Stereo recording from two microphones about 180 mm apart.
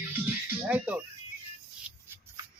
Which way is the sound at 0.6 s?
10° right (ahead or behind).